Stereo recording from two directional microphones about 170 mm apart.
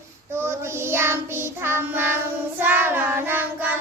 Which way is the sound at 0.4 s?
15° right (ahead or behind).